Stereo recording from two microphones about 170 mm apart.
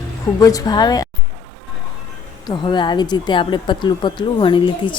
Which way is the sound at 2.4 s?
25° left (ahead or behind).